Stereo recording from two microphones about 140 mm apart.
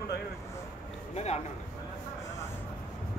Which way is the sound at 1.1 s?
50° left (ahead or behind).